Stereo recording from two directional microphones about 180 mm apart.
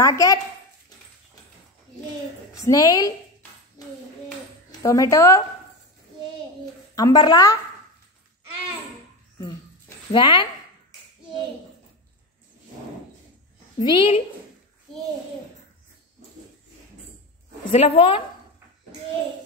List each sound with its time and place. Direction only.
0.0 s a woman's voice: 20° left (ahead or behind)
2.5 s a woman's voice: 20° left (ahead or behind)
3.8 s a sound: 20° left (ahead or behind)
4.8 s a woman's voice: 15° left (ahead or behind)
7.0 s a woman's voice: 20° left (ahead or behind)
10.1 s a woman's voice: 25° left (ahead or behind)
13.7 s a woman's voice: 25° left (ahead or behind)
17.6 s speech: 30° left (ahead or behind)